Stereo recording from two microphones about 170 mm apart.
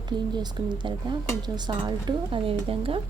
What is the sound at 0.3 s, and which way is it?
Speech, 25° right (ahead or behind).